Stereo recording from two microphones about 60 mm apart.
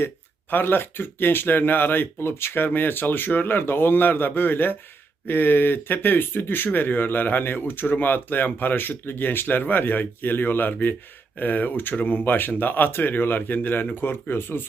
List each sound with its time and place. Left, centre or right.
0.5 s speech: left